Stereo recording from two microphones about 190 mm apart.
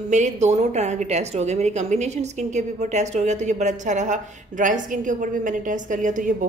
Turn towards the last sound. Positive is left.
turn(degrees=-45)  # may be behind; listen again after turning